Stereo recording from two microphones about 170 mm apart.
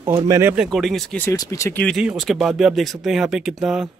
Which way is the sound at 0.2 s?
15° right (ahead or behind).